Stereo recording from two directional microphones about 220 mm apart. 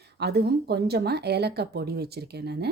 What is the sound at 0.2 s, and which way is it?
A woman's voice, 45° right (ahead or behind).